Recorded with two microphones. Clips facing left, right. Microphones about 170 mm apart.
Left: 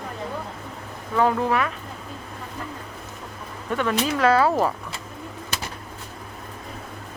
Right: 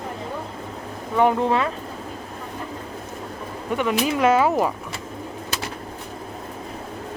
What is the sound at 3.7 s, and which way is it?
Speech, 15° right (ahead or behind).